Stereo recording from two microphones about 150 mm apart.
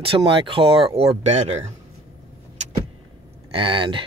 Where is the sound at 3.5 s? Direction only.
35° right (ahead or behind).